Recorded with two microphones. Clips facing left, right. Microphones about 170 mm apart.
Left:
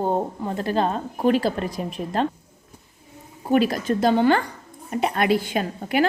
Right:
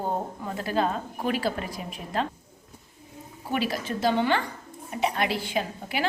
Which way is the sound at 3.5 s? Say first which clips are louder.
Left 8 dB; 50° left (ahead or behind).